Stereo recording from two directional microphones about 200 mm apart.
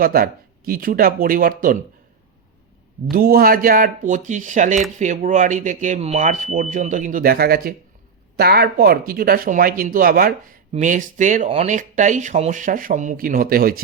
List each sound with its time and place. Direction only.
0.0 s speech: 45° right (ahead or behind)
3.1 s speech: 50° right (ahead or behind)